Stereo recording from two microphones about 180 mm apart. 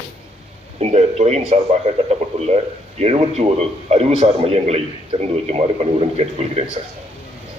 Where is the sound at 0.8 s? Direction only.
35° right (ahead or behind).